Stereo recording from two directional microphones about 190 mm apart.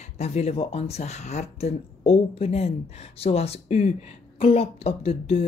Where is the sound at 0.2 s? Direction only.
35° left (ahead or behind).